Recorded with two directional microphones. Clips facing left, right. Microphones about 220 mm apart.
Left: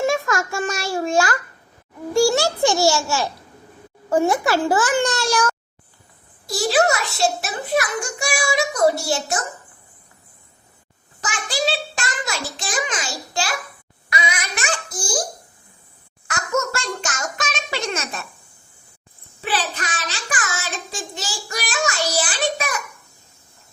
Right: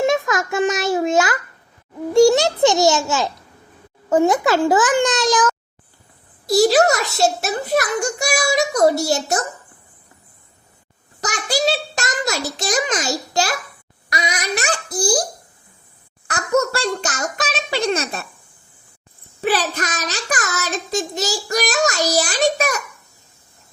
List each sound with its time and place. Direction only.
0.0 s a sound: 20° right (ahead or behind)
2.1 s a child's voice: 20° right (ahead or behind)
6.5 s a child's voice: 40° right (ahead or behind)
11.2 s a child's voice: 40° right (ahead or behind)
14.1 s babbling: 40° right (ahead or behind)
16.2 s a child's voice: 35° right (ahead or behind)
19.4 s a child's voice: 40° right (ahead or behind)